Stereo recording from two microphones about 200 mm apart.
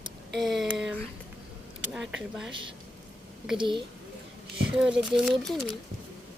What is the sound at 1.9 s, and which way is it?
Speech, 5° right (ahead or behind).